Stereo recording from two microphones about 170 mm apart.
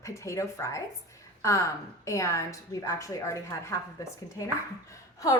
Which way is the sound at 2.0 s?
20° left (ahead or behind).